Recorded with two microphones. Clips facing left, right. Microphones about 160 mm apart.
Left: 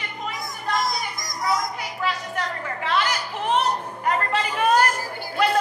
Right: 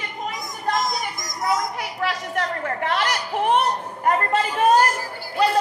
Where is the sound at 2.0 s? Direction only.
70° right (ahead or behind).